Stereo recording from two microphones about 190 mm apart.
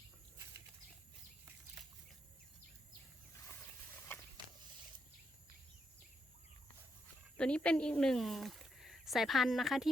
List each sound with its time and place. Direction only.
7.3 s speech: 5° left (ahead or behind)